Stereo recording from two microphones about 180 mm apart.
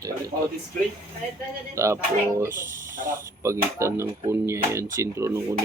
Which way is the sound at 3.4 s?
15° right (ahead or behind).